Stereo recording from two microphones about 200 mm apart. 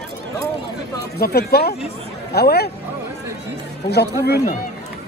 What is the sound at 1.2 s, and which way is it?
Speech, 55° left (ahead or behind).